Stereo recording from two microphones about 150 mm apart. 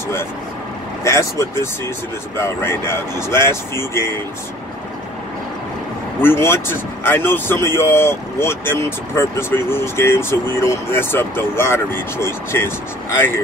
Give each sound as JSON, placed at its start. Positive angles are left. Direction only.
{"t": 1.0, "sound": "speech", "side_deg": 20}
{"t": 6.2, "sound": "speech", "side_deg": 15}